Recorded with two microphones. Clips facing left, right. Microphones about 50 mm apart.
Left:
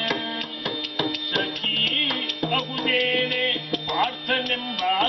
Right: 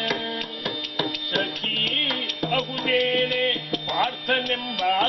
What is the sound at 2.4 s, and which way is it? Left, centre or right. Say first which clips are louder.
Music: even; centre.